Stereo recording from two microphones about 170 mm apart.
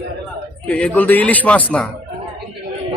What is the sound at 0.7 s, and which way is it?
A man's voice, 10° left (ahead or behind).